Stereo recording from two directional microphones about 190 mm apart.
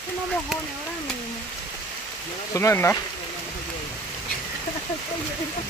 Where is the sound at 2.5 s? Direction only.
15° left (ahead or behind).